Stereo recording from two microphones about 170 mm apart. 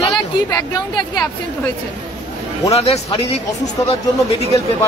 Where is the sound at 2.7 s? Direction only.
35° left (ahead or behind).